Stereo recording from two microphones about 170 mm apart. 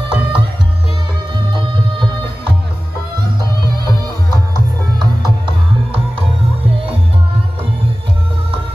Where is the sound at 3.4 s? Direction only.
25° right (ahead or behind).